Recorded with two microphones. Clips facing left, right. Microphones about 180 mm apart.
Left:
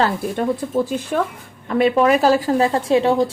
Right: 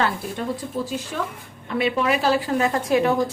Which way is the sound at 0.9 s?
55° left (ahead or behind).